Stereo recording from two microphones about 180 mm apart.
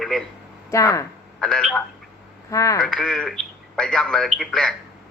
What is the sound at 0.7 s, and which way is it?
Speech, 15° left (ahead or behind).